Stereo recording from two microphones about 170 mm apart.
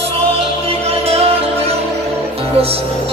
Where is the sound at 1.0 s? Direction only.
35° right (ahead or behind).